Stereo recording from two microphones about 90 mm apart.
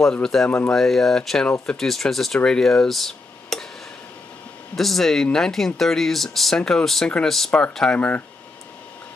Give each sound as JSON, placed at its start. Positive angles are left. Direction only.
{"t": 0.0, "sound": "speech", "side_deg": 5}
{"t": 0.5, "sound": "speech", "side_deg": 20}
{"t": 0.7, "sound": "speech", "side_deg": 5}
{"t": 4.7, "sound": "speech", "side_deg": 5}